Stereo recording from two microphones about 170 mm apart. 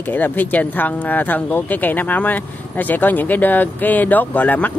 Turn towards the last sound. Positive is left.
turn(degrees=10)  # may be behind; listen again after turning